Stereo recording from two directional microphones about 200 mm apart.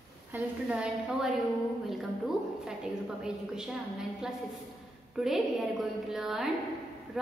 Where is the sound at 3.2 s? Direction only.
5° right (ahead or behind).